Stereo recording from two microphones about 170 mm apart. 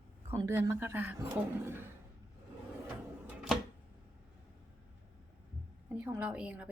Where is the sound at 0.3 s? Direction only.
20° right (ahead or behind).